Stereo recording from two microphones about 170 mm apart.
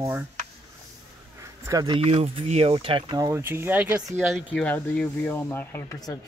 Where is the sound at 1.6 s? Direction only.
20° right (ahead or behind).